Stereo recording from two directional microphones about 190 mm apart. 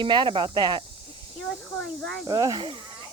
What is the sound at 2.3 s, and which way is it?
Speech, 20° right (ahead or behind).